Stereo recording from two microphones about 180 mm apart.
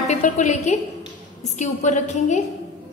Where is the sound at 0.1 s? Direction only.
40° left (ahead or behind).